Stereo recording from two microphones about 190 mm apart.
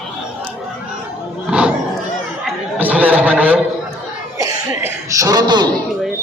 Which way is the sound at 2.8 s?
10° right (ahead or behind).